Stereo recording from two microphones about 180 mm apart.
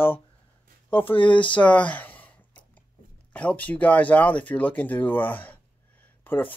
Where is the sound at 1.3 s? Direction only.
25° left (ahead or behind).